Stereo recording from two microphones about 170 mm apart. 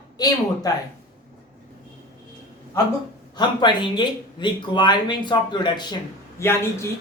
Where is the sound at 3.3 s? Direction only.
25° left (ahead or behind).